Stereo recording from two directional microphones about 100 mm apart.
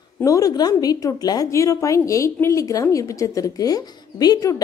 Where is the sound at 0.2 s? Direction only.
35° left (ahead or behind).